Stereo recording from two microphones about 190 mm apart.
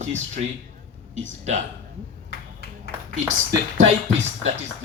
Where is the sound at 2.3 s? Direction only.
55° left (ahead or behind).